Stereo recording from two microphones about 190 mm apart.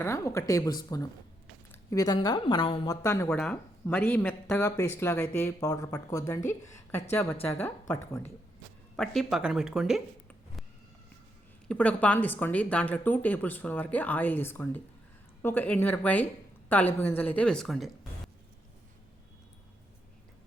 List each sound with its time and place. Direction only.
0.0 s a woman's voice: 15° left (ahead or behind)
2.9 s speech: 15° left (ahead or behind)
9.0 s speech: centre (ahead or behind)
11.7 s speech: 5° left (ahead or behind)